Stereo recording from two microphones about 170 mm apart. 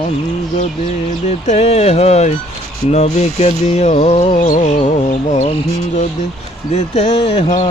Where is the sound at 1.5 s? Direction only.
40° left (ahead or behind).